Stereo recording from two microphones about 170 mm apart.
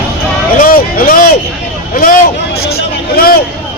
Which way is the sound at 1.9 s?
55° left (ahead or behind).